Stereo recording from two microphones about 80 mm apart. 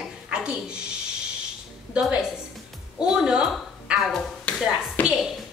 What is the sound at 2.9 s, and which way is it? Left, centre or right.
Speech, centre.